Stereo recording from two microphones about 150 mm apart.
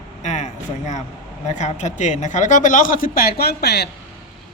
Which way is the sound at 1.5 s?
50° left (ahead or behind).